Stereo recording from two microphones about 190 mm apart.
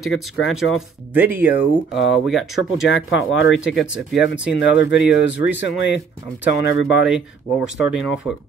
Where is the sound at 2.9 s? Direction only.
85° left.